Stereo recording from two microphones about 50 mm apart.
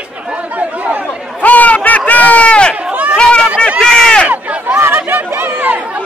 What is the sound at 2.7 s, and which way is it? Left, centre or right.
Chatter, right.